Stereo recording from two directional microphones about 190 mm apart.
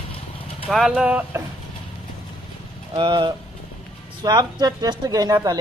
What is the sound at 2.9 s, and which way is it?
Speech, 25° right (ahead or behind).